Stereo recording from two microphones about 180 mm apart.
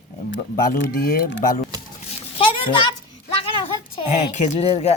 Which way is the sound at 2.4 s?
25° left (ahead or behind).